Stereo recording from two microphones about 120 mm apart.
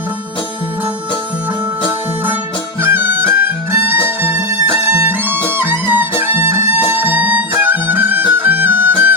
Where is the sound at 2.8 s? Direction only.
15° right (ahead or behind).